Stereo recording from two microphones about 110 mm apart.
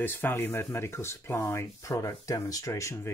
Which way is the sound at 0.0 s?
20° left (ahead or behind).